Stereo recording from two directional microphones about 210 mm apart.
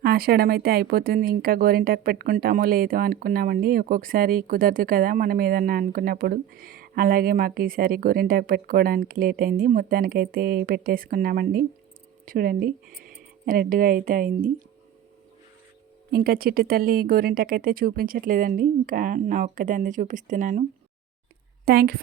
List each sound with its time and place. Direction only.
0.0 s speech: 45° right (ahead or behind)
16.1 s a woman's voice: 45° right (ahead or behind)